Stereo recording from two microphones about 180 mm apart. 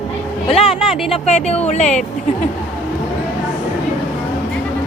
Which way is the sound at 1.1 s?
35° left (ahead or behind).